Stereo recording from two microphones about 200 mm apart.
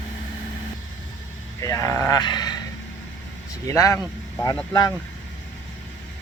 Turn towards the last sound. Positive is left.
turn(degrees=20)  # may be behind; listen again after turning